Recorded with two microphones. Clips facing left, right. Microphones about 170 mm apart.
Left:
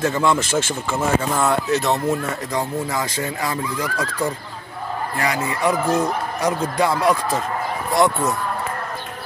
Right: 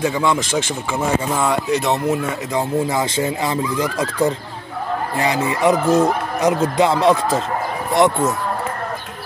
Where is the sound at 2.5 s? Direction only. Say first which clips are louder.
Right 5 dB; 25° right (ahead or behind).